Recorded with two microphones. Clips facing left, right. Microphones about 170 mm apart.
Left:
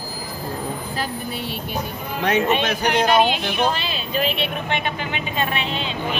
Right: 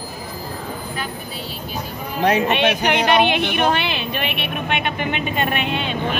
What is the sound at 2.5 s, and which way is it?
Speech, 70° right (ahead or behind).